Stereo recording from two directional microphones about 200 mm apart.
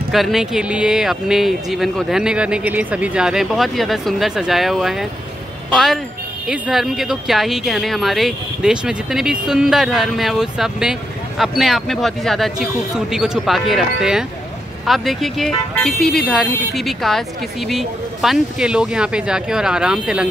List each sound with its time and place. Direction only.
0.1 s speech: centre (ahead or behind)